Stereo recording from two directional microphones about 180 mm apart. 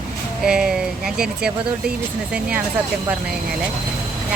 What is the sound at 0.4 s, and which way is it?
Speech, 5° right (ahead or behind).